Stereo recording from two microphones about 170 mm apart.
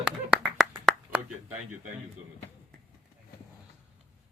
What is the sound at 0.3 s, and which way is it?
Clapping, 5° right (ahead or behind).